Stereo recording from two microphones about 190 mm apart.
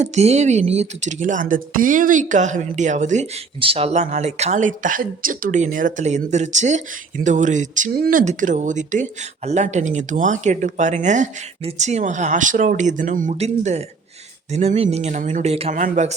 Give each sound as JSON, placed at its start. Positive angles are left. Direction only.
{"t": 0.0, "sound": "a woman's voice", "side_deg": -35}